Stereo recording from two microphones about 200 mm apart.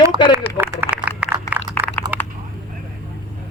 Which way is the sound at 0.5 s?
10° right (ahead or behind).